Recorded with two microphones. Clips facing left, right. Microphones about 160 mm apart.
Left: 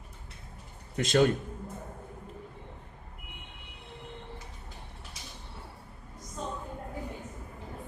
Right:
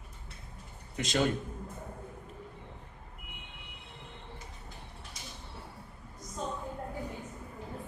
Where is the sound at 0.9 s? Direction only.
55° left (ahead or behind).